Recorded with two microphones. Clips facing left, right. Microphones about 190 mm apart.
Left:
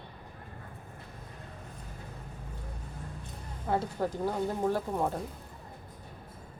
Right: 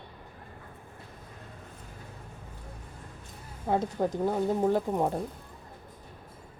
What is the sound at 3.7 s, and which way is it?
Speech, 20° right (ahead or behind).